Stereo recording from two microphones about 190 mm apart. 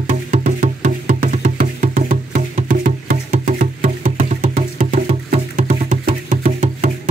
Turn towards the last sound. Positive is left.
turn(degrees=-45)  # may be behind; listen again after turning